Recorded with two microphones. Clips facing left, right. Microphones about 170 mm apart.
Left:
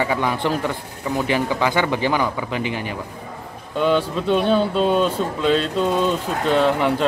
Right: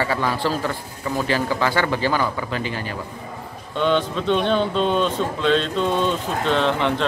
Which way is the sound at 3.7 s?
5° left (ahead or behind).